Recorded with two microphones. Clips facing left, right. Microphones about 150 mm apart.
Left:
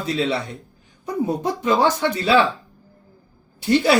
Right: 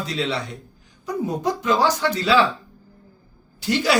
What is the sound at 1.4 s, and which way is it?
Speech, 25° left (ahead or behind).